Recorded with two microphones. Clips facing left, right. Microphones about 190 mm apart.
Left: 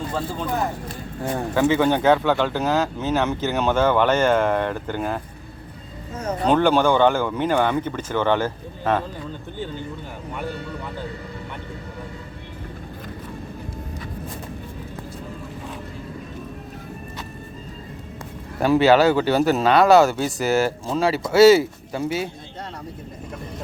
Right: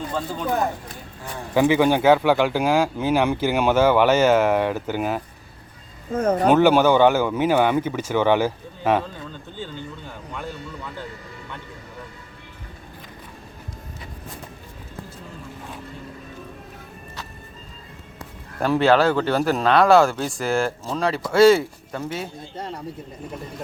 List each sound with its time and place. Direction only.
1.2 s speech: 55° left (ahead or behind)
1.5 s speech: 15° right (ahead or behind)
6.1 s speech: 55° right (ahead or behind)
6.5 s speech: 10° right (ahead or behind)
18.6 s speech: 5° left (ahead or behind)